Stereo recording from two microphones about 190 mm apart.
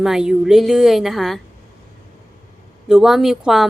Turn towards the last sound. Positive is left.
turn(degrees=0)  # may be behind; listen again after turning